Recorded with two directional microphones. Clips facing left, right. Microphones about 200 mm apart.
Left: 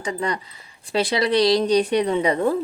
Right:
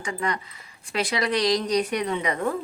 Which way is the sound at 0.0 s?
35° left (ahead or behind).